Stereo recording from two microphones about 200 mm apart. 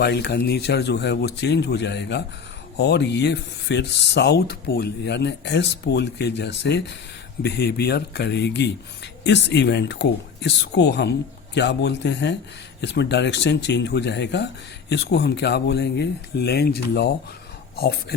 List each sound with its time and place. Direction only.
0.0 s speech: 55° left (ahead or behind)